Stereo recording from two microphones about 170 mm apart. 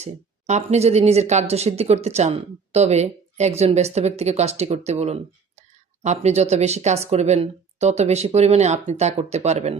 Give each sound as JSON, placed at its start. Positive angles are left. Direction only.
{"t": 0.0, "sound": "speech", "side_deg": -40}